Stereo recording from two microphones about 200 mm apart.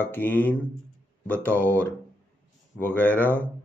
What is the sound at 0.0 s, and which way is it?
Speech, 10° left (ahead or behind).